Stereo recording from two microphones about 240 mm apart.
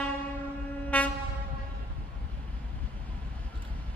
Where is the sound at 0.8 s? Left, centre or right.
Centre.